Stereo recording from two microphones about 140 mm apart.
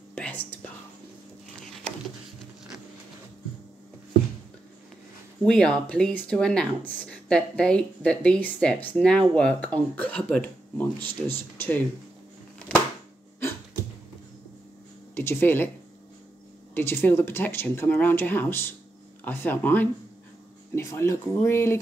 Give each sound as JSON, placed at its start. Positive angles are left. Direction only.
{"t": 0.1, "sound": "whispering", "side_deg": 10}
{"t": 5.4, "sound": "speech", "side_deg": 5}
{"t": 15.1, "sound": "speech", "side_deg": 15}
{"t": 16.7, "sound": "speech", "side_deg": 15}